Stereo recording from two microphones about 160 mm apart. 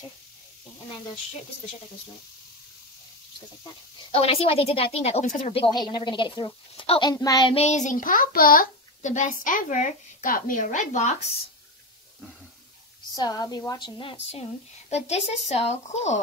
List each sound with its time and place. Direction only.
4.1 s a woman's voice: 35° left (ahead or behind)
5.5 s a woman's voice: 30° left (ahead or behind)
7.5 s a child's voice: 45° left (ahead or behind)
13.1 s a woman's voice: 25° left (ahead or behind); by 16.2 s 45° left (ahead or behind)